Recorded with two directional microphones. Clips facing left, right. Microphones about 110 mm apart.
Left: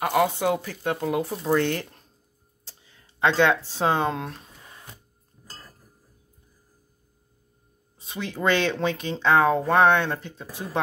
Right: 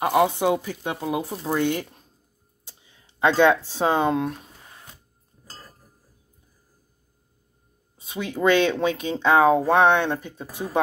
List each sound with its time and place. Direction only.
0.0 s speech: 20° right (ahead or behind)
2.6 s a sound: 15° right (ahead or behind)
4.0 s speech: 20° right (ahead or behind)
8.1 s speech: 10° right (ahead or behind)